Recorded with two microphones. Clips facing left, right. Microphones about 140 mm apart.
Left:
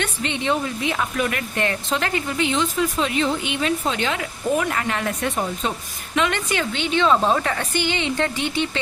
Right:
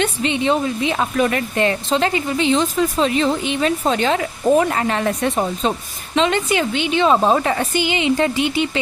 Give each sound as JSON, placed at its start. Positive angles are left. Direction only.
{"t": 0.0, "sound": "speech", "side_deg": -15}
{"t": 2.6, "sound": "a woman's voice", "side_deg": -35}